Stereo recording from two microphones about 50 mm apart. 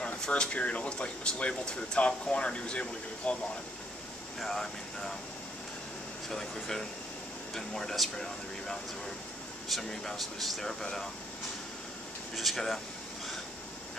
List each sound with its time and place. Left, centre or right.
0.0 s speech: centre
4.4 s speech: centre
6.2 s speech: centre
12.4 s speech: centre